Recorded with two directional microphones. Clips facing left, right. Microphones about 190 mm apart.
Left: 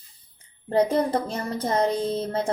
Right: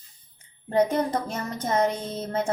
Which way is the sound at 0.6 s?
30° left (ahead or behind).